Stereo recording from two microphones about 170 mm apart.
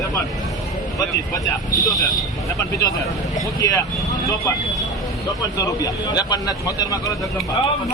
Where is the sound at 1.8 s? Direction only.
Centre (ahead or behind).